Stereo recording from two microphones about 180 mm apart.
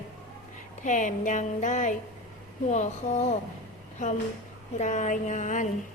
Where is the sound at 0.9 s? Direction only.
45° left (ahead or behind).